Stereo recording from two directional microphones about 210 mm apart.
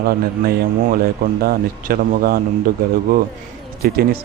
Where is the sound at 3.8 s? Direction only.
45° right (ahead or behind).